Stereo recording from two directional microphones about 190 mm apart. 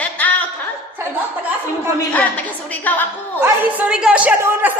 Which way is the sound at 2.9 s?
10° left (ahead or behind).